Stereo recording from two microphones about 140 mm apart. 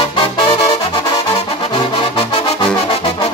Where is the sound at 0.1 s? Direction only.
40° left (ahead or behind).